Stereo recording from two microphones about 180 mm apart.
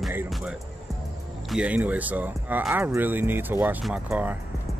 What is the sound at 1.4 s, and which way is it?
Speech, 5° right (ahead or behind).